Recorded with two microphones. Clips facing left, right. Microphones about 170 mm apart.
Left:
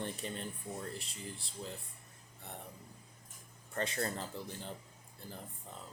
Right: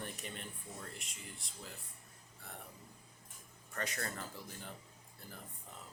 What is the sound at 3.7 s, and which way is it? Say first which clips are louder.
Speech: left 5 dB; 25° left (ahead or behind).